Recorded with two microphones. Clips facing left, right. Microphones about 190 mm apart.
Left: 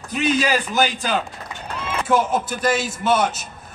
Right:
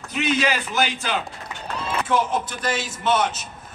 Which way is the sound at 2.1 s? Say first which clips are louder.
Left 4 dB; 10° left (ahead or behind).